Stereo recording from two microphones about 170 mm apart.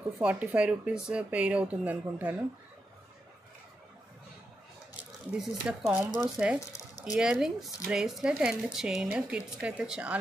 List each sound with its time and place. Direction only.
0.2 s speech: 10° right (ahead or behind)
5.3 s speech: 5° right (ahead or behind)
6.7 s a sound: 20° left (ahead or behind)
7.2 s speech: 5° right (ahead or behind)